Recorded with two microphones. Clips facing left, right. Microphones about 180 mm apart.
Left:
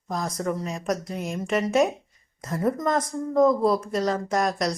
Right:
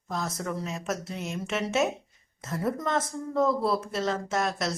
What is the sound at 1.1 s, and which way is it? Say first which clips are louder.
Speech: left 4 dB; 50° left (ahead or behind).